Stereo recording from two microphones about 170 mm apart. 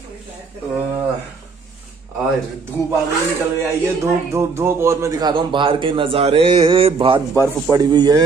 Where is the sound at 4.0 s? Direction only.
15° right (ahead or behind).